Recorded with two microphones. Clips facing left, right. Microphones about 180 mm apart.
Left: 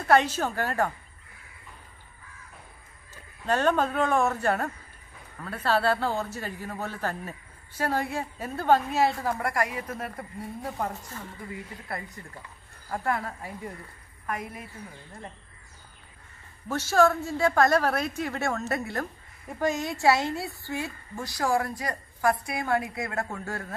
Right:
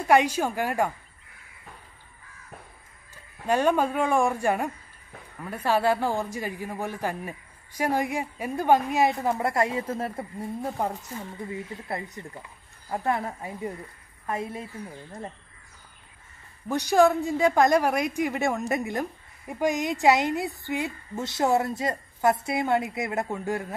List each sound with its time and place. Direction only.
0.0 s a woman's voice: 10° right (ahead or behind)
3.4 s a woman's voice: 10° right (ahead or behind); by 14.7 s 25° right (ahead or behind)
16.6 s a woman's voice: 15° right (ahead or behind)